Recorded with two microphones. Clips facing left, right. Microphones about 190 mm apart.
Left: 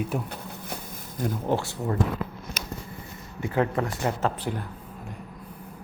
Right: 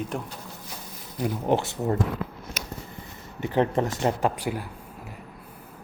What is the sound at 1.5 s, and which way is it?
Speech, 20° right (ahead or behind).